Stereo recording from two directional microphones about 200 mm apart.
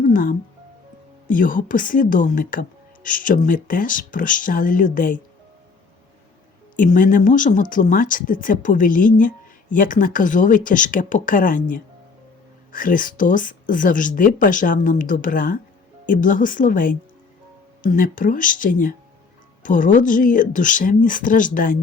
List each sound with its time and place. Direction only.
0.0 s speech: 45° left (ahead or behind)
6.7 s speech: 40° left (ahead or behind)